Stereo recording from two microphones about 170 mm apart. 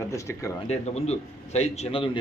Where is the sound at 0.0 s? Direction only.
15° left (ahead or behind).